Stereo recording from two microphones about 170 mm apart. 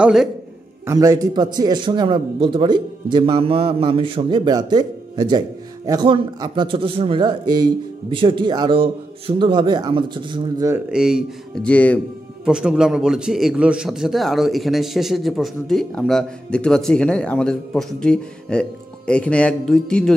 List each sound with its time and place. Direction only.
0.0 s a man's voice: centre (ahead or behind)
0.8 s a man's voice: 20° right (ahead or behind)
10.9 s a man's voice: 5° right (ahead or behind)
12.4 s a man's voice: 5° right (ahead or behind)